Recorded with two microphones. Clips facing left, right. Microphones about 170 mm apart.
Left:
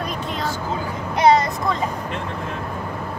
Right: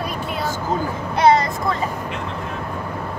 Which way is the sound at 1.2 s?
20° left (ahead or behind).